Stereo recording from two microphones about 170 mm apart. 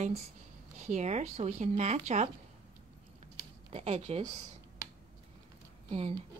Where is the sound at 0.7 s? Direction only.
40° right (ahead or behind).